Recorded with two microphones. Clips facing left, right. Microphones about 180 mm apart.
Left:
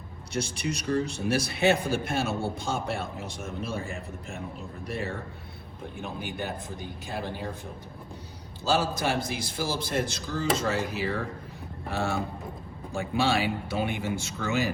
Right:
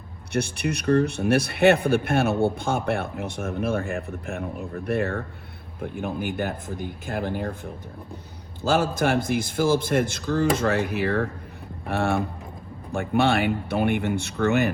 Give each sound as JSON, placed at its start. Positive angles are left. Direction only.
{"t": 0.3, "sound": "a man's voice", "side_deg": -60}